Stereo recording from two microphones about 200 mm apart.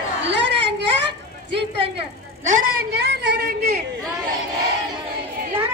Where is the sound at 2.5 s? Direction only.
40° right (ahead or behind).